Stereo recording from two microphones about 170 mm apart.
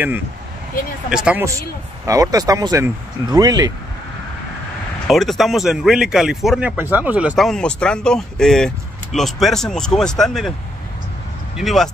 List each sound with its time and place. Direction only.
1.1 s speech: 5° right (ahead or behind)
2.0 s speech: 20° right (ahead or behind)
5.0 s speech: centre (ahead or behind)
11.5 s speech: centre (ahead or behind)